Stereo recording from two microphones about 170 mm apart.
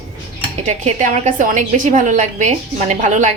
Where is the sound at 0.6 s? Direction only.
45° right (ahead or behind).